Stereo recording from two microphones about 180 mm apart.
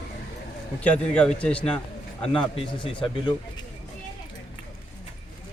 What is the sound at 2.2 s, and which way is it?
Speech, 30° left (ahead or behind).